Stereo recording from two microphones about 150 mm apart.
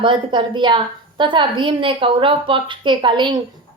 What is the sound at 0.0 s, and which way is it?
Speech, 35° right (ahead or behind).